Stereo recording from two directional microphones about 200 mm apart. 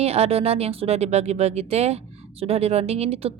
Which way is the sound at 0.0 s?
30° right (ahead or behind).